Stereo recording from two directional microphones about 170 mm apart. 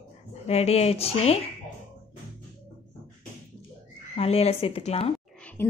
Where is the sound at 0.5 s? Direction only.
40° left (ahead or behind).